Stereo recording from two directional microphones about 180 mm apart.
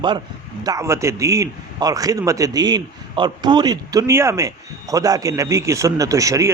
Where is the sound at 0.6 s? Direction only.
20° right (ahead or behind).